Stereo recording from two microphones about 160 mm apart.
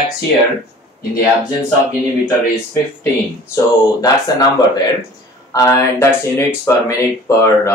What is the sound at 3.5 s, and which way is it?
Speech, 20° left (ahead or behind).